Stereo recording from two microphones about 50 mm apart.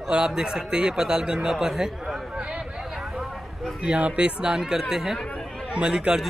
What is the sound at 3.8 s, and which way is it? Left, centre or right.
Speech, right.